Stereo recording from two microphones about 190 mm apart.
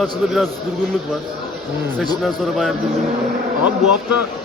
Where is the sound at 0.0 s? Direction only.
5° left (ahead or behind).